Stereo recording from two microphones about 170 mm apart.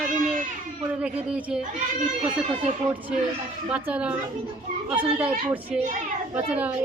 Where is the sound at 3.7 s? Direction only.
5° right (ahead or behind).